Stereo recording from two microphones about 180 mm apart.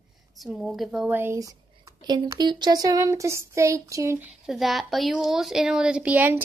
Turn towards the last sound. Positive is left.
turn(degrees=-10)  # may be behind; listen again after turning